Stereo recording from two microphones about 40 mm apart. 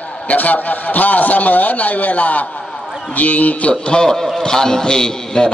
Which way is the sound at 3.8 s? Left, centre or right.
Left.